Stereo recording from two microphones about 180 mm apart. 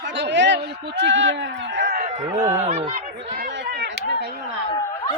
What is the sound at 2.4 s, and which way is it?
Speech, 40° right (ahead or behind).